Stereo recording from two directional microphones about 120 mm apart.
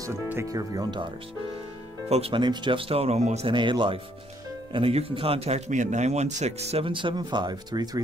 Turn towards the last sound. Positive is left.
turn(degrees=-35)  # may be behind; listen again after turning